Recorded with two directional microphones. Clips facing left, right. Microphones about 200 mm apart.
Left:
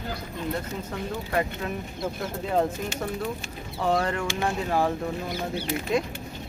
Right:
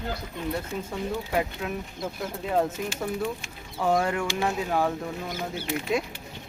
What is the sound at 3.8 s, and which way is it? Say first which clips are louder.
Speech: right 1 dB; centre (ahead or behind).